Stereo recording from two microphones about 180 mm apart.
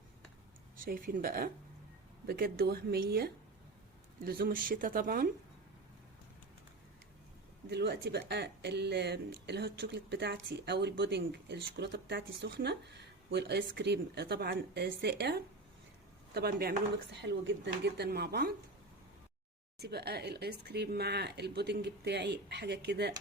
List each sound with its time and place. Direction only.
0.8 s speech: 50° right (ahead or behind)
7.7 s speech: 70° right (ahead or behind)
19.8 s speech: 65° right (ahead or behind)